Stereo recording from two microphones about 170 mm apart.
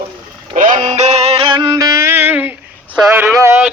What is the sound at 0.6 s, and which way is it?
Music, 45° right (ahead or behind).